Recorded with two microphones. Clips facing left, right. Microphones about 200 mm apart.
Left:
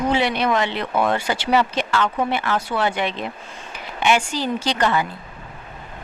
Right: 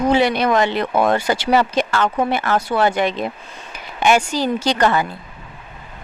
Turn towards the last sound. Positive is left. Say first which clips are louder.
# right 3 dB
turn(degrees=-45)  # may be behind; listen again after turning